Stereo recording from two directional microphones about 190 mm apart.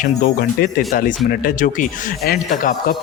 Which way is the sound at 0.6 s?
50° left (ahead or behind).